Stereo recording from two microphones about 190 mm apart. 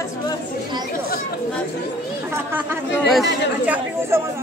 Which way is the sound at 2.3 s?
10° right (ahead or behind).